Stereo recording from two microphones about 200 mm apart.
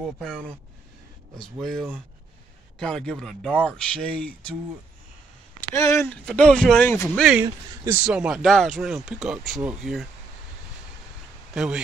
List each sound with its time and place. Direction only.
0.0 s speech: 5° left (ahead or behind)
1.4 s speech: centre (ahead or behind)
5.8 s speech: 15° left (ahead or behind)
6.2 s speech: 5° left (ahead or behind)
7.4 s speech: 15° right (ahead or behind)
8.0 s speech: 5° right (ahead or behind)
11.5 s speech: 5° right (ahead or behind)